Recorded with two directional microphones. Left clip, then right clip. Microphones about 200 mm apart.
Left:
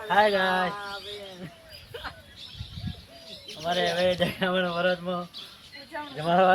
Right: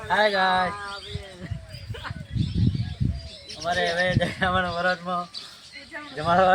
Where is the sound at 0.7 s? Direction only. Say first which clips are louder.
Right 2 dB; 50° right (ahead or behind).